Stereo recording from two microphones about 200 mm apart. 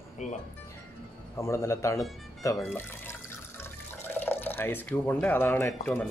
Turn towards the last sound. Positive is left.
turn(degrees=10)  # may be behind; listen again after turning